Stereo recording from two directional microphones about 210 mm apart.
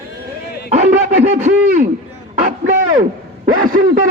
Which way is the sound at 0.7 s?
35° right (ahead or behind).